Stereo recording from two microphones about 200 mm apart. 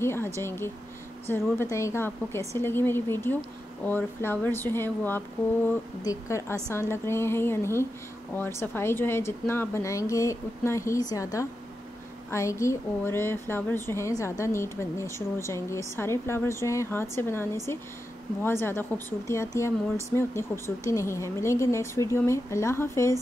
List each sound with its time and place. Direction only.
0.0 s a woman's voice: 10° left (ahead or behind)
12.3 s a woman's voice: 15° left (ahead or behind)